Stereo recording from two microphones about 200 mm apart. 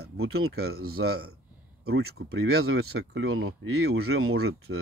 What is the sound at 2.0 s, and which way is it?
Speech, 90° right.